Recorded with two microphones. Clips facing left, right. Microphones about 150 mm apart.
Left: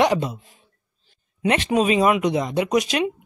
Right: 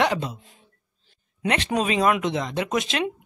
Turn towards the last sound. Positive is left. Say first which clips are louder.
# left 5 dB
turn(degrees=15)  # may be behind; listen again after turning